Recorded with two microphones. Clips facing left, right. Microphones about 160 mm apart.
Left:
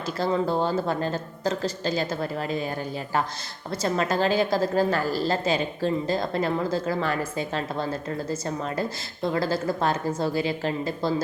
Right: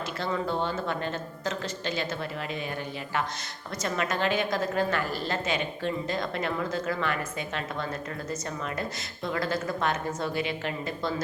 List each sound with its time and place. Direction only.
0.2 s a woman's voice: 35° left (ahead or behind)